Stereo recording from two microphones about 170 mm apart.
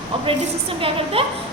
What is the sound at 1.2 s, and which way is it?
Speech, 35° right (ahead or behind).